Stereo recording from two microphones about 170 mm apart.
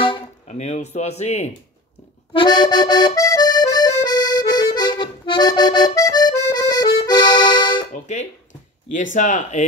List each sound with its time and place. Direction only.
0.5 s speech: 40° left (ahead or behind)
2.3 s accordion: 25° left (ahead or behind)
7.9 s speech: 45° left (ahead or behind)